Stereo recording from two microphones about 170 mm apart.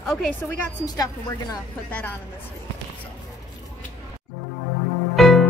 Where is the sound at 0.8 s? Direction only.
20° left (ahead or behind).